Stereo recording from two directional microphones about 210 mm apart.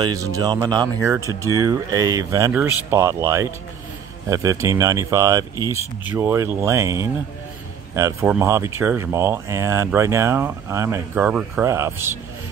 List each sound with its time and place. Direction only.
0.0 s speech: 15° right (ahead or behind)